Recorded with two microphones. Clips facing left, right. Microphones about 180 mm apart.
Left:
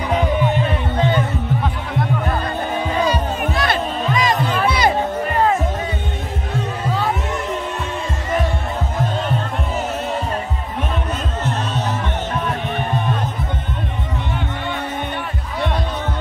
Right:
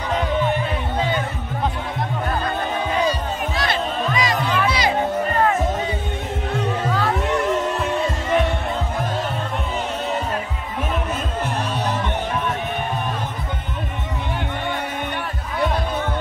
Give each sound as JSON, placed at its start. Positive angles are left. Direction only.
{"t": 3.1, "sound": "music", "side_deg": 55}